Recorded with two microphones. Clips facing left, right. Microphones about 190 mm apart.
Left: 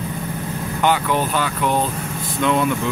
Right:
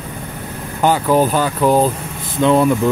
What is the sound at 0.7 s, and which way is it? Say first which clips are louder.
Speech: right 5 dB; 35° right (ahead or behind).